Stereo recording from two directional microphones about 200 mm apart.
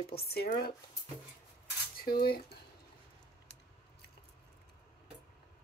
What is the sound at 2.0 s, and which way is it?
Speech, 50° left (ahead or behind).